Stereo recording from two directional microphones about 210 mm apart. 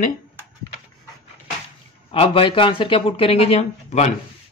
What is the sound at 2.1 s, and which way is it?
Speech, 25° left (ahead or behind).